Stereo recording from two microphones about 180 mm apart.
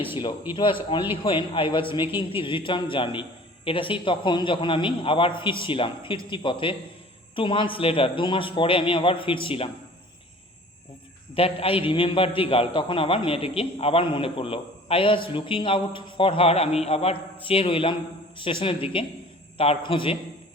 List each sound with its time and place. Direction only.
0.5 s a man's voice: 30° left (ahead or behind)
11.3 s a man's voice: 30° left (ahead or behind)